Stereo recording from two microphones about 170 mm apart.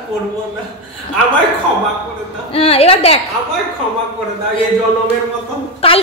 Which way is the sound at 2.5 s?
35° left (ahead or behind).